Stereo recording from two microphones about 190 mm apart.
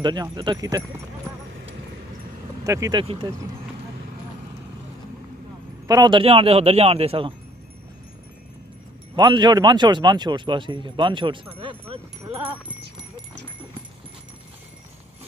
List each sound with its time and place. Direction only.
0.0 s speech: 25° right (ahead or behind)
2.6 s speech: 15° right (ahead or behind)
5.9 s speech: 20° right (ahead or behind)
9.1 s speech: 25° right (ahead or behind)